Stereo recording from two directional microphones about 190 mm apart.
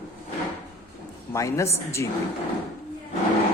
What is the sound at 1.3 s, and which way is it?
Speech, 15° left (ahead or behind).